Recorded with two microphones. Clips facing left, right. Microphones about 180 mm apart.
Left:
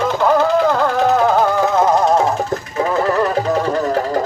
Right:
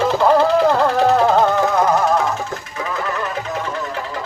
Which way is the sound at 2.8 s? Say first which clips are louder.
Left 8 dB; 40° left (ahead or behind).